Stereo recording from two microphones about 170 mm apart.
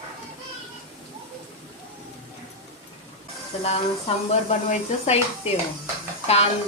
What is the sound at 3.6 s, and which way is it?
Speech, 40° left (ahead or behind).